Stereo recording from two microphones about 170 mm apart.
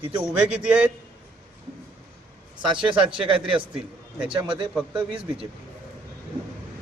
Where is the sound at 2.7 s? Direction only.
30° right (ahead or behind).